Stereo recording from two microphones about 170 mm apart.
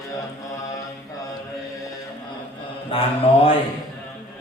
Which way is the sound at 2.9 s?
35° left (ahead or behind).